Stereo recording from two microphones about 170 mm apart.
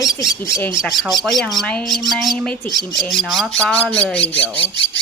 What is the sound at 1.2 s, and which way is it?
Speech, centre (ahead or behind).